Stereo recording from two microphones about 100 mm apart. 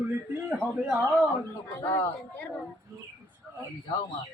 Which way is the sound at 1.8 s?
25° left (ahead or behind).